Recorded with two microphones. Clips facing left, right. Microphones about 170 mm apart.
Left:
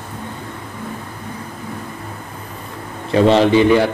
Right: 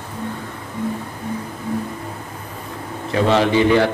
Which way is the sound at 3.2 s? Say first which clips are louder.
Left 3 dB; 20° left (ahead or behind).